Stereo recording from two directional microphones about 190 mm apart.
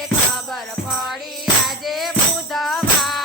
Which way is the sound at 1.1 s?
Centre (ahead or behind).